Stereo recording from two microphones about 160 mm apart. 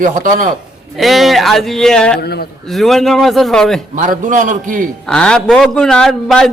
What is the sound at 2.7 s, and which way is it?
A woman's voice, centre (ahead or behind).